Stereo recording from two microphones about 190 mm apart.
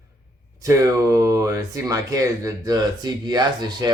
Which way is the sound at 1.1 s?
15° right (ahead or behind).